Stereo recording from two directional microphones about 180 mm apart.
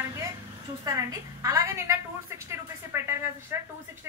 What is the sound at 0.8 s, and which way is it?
A woman's voice, 20° right (ahead or behind).